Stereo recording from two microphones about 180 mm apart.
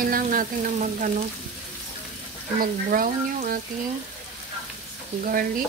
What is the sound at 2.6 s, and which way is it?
Speech, 50° right (ahead or behind).